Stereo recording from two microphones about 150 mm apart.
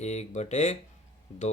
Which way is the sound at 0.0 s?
50° left (ahead or behind).